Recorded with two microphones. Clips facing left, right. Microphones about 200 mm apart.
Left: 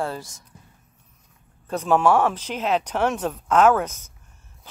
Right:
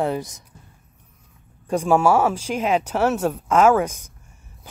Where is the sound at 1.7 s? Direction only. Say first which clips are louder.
Right 2 dB; 10° right (ahead or behind).